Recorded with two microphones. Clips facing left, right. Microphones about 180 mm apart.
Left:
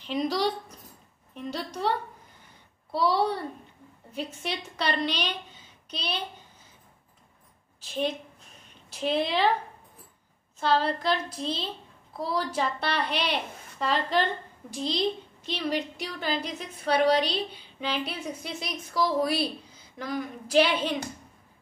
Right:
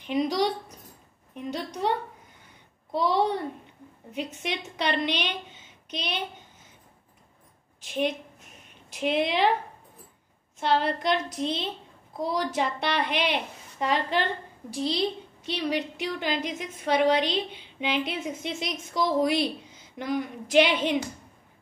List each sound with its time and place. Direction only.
0.0 s a woman's voice: 15° right (ahead or behind)
5.2 s a sound: 35° left (ahead or behind)
5.9 s a woman's voice: 15° right (ahead or behind)
7.8 s a woman's voice: 15° right (ahead or behind)
10.6 s a woman's voice: 20° right (ahead or behind)
11.2 s a woman's voice: 30° left (ahead or behind)
12.2 s a woman's voice: 20° right (ahead or behind)